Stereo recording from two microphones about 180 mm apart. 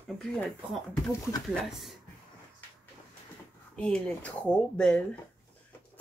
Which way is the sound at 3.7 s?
5° left (ahead or behind).